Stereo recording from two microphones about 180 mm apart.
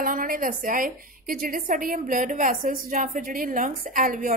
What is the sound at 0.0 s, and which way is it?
A woman's voice, 50° right (ahead or behind).